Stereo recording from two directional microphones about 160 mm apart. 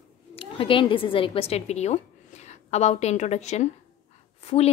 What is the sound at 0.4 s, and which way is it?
A woman's voice, 35° left (ahead or behind).